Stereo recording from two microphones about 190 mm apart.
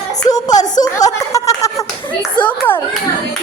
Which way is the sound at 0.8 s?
20° left (ahead or behind).